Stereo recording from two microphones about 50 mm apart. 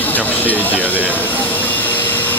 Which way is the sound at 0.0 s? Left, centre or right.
Left.